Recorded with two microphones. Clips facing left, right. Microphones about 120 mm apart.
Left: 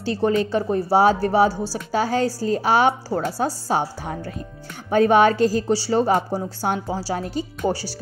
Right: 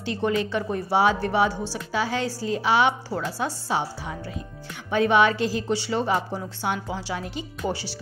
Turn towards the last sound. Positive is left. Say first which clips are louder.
# left 5 dB
turn(degrees=40)  # may be behind; listen again after turning